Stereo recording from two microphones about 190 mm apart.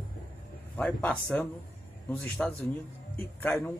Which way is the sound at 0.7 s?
10° left (ahead or behind).